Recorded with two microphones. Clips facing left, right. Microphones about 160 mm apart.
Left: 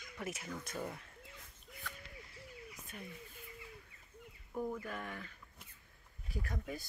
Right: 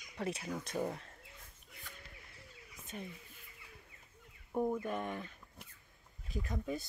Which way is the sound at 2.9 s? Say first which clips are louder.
Right 5 dB; 30° right (ahead or behind).